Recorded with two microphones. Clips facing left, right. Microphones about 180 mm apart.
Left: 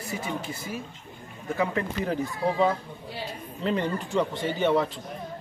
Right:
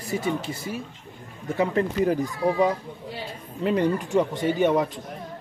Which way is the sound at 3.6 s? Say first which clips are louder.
Right 5 dB; 15° right (ahead or behind).